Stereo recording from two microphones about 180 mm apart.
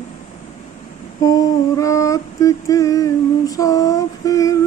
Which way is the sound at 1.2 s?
20° left (ahead or behind).